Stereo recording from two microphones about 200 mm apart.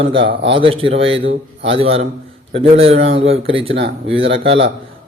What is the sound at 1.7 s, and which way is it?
Speech, 30° right (ahead or behind).